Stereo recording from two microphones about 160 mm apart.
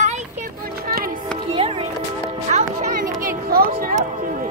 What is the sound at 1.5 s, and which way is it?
Music, 35° right (ahead or behind).